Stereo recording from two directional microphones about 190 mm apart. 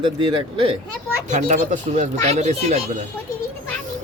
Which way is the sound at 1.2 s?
40° right (ahead or behind).